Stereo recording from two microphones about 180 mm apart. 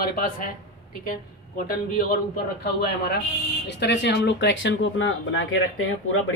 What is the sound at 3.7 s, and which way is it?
Speech, 70° left (ahead or behind).